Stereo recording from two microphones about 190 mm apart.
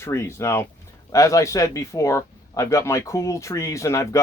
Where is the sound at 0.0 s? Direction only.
15° left (ahead or behind).